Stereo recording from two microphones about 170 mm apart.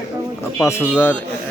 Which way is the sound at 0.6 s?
15° left (ahead or behind).